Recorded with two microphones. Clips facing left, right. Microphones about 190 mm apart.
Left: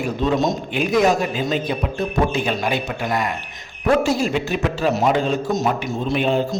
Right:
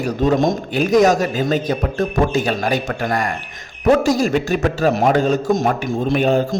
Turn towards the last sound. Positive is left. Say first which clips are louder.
# right 3 dB
turn(degrees=-45)  # may be behind; listen again after turning